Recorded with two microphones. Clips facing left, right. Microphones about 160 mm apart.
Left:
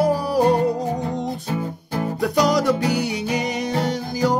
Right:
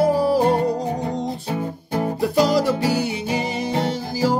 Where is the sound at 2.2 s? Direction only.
Centre (ahead or behind).